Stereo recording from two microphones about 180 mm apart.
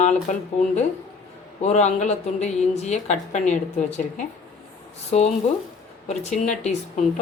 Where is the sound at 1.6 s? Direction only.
40° left (ahead or behind).